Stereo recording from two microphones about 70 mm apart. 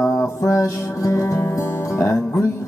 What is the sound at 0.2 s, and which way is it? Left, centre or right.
Music, left.